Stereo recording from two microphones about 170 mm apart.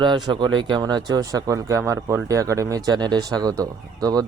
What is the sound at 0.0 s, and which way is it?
Speech, 25° right (ahead or behind).